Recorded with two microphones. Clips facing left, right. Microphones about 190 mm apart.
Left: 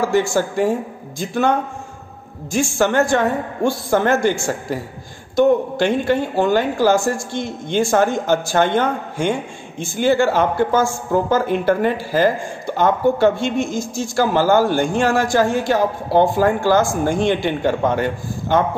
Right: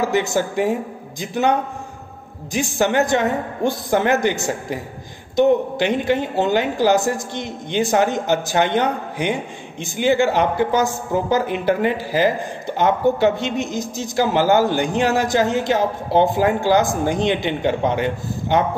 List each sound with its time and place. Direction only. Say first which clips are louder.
0.0 s a woman's voice: left 2 dB; 20° right (ahead or behind)